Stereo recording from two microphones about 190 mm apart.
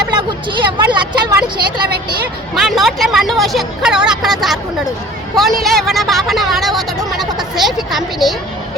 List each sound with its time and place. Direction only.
0.1 s vehicle: 25° right (ahead or behind)
2.6 s speech: centre (ahead or behind)